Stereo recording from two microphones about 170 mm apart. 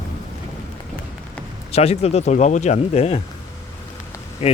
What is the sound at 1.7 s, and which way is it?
Speech, 40° left (ahead or behind).